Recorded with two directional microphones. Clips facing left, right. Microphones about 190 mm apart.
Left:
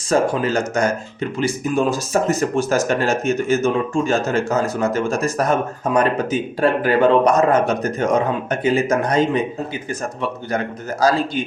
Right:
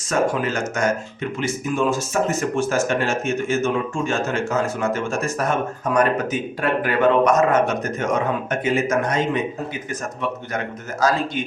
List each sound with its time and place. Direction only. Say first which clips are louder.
0.1 s speech: left 3 dB; 35° left (ahead or behind)
11.0 s speech: left 3 dB; 35° left (ahead or behind)